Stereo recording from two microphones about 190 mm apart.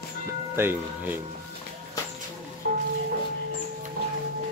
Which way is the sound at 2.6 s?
50° right (ahead or behind).